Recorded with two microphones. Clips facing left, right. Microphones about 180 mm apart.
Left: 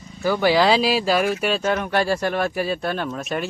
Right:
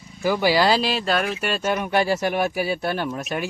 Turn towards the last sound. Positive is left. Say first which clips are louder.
# even
turn(degrees=-5)  # may be behind; listen again after turning